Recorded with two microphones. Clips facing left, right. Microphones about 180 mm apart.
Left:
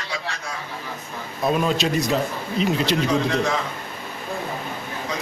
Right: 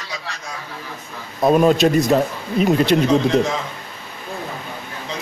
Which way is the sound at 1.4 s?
45° right (ahead or behind).